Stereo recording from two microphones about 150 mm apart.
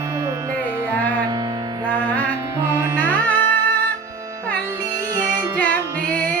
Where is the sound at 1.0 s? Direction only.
10° left (ahead or behind).